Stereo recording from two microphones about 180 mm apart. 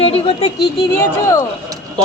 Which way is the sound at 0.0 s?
35° left (ahead or behind).